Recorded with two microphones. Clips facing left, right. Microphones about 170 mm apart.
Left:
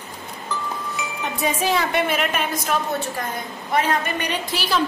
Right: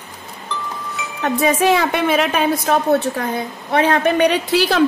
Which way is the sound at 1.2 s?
70° right (ahead or behind).